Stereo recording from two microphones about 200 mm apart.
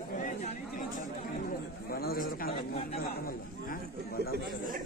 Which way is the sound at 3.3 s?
45° left (ahead or behind).